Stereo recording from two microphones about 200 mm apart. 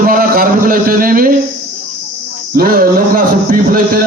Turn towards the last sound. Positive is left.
turn(degrees=-45)  # may be behind; listen again after turning